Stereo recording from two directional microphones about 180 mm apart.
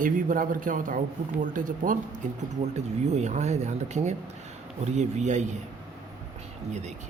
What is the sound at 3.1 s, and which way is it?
Speech, 40° right (ahead or behind).